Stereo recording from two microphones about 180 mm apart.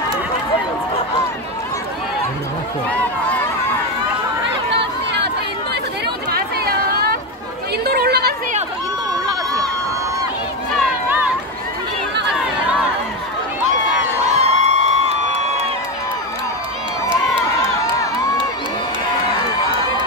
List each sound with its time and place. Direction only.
6.3 s chatter: 60° right (ahead or behind)
10.8 s run: 10° right (ahead or behind)
14.2 s crowd: 40° right (ahead or behind)